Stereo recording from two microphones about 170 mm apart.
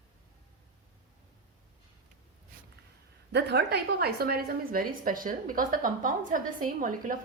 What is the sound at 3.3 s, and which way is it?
A woman's voice, 80° right.